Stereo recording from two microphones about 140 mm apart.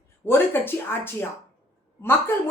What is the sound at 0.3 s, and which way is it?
A woman's voice, 15° left (ahead or behind).